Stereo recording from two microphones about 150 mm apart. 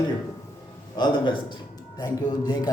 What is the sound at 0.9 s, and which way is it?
A man's voice, 30° left (ahead or behind).